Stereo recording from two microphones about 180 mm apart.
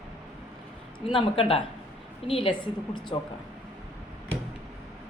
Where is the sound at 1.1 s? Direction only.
30° left (ahead or behind).